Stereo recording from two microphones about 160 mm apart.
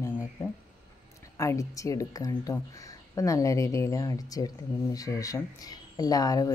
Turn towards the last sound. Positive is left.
turn(degrees=20)  # may be behind; listen again after turning